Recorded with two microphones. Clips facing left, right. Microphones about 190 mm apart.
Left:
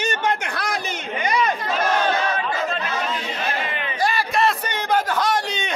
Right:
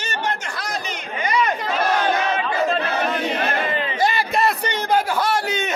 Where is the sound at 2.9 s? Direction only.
60° right (ahead or behind).